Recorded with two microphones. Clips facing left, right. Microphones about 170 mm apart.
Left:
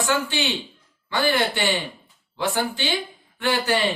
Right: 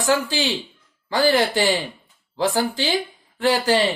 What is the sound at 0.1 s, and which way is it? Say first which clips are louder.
A man's voice: right 6 dB; 35° right (ahead or behind).